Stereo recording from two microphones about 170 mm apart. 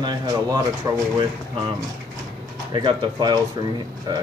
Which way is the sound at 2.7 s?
25° right (ahead or behind).